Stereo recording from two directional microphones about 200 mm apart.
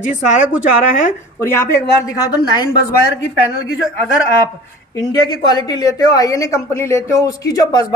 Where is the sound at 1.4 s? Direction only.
10° left (ahead or behind).